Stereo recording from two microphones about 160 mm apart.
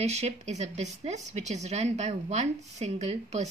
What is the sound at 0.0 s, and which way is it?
Speech, 45° right (ahead or behind).